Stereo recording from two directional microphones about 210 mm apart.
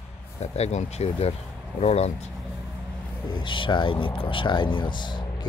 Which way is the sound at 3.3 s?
25° left (ahead or behind).